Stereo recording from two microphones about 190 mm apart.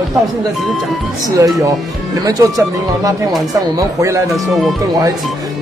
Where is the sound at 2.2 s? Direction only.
20° right (ahead or behind).